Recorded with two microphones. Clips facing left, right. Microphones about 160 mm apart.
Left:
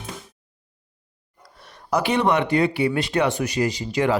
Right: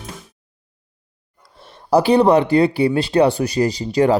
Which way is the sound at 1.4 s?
25° right (ahead or behind).